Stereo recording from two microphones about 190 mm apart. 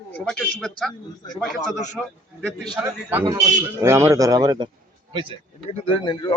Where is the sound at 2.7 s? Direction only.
10° right (ahead or behind).